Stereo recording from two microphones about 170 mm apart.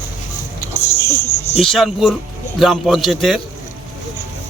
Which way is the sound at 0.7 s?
15° left (ahead or behind).